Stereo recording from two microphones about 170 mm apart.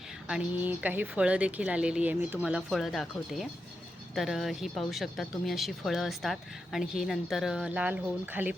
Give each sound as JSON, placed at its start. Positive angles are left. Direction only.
{"t": 0.3, "sound": "speech", "side_deg": -5}